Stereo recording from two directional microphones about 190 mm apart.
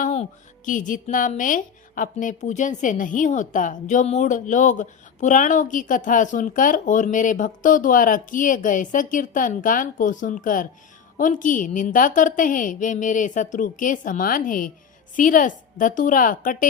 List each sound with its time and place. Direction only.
0.0 s a woman's voice: 40° left (ahead or behind)